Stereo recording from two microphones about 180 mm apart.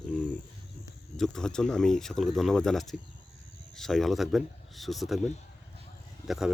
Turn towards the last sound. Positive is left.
turn(degrees=0)  # may be behind; listen again after turning